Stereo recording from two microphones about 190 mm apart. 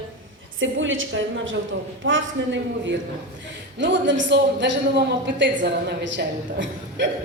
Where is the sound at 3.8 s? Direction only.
70° right (ahead or behind).